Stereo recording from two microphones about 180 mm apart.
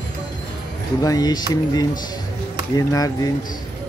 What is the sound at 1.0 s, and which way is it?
Speech, 20° left (ahead or behind).